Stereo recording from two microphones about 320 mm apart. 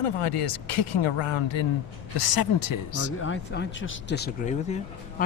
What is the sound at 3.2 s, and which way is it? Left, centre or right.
Speech, left.